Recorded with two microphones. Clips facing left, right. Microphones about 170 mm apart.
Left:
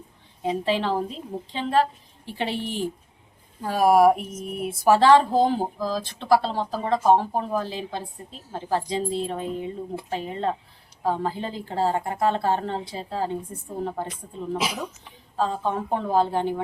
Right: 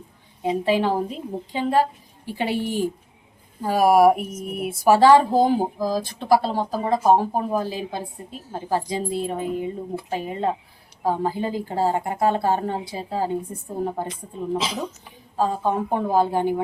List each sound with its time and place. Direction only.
0.4 s speech: 10° right (ahead or behind)
15.0 s speech: 10° right (ahead or behind)